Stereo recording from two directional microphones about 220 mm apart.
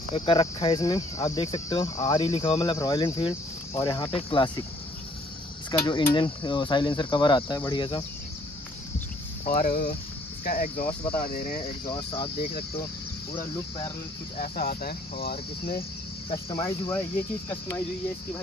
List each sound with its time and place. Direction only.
0.1 s cricket: 25° left (ahead or behind)
5.7 s cricket: 20° left (ahead or behind)
9.5 s cricket: 40° left (ahead or behind)
11.9 s cricket: 20° left (ahead or behind)
13.3 s cricket: 15° left (ahead or behind)
14.3 s cricket: 40° left (ahead or behind)
16.3 s cricket: 25° left (ahead or behind)
16.6 s cricket: 15° left (ahead or behind)